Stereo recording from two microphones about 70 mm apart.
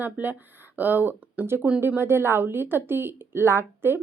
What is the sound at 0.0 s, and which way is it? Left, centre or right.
Speech, right.